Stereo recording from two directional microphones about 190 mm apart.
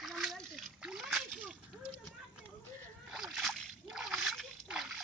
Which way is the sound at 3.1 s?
Centre (ahead or behind).